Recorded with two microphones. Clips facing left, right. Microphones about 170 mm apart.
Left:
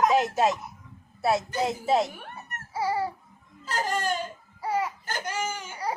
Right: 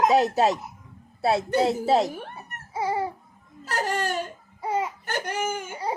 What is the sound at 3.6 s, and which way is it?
Speech, 65° right (ahead or behind).